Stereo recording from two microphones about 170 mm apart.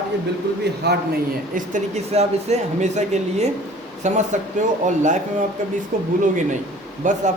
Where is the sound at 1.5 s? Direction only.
45° right (ahead or behind).